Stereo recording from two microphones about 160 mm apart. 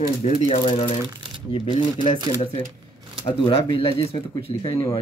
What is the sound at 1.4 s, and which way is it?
Speech, 30° left (ahead or behind).